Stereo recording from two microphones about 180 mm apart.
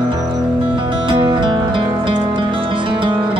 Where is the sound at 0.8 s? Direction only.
25° right (ahead or behind).